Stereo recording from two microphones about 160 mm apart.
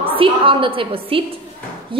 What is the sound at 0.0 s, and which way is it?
A woman's voice, 35° right (ahead or behind).